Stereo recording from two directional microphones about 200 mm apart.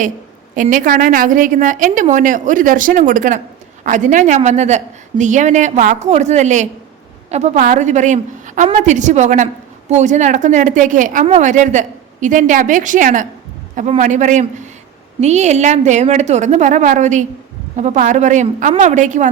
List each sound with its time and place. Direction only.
0.5 s a woman's voice: 40° right (ahead or behind)